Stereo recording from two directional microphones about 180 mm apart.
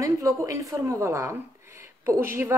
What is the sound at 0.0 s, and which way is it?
Speech, 15° right (ahead or behind).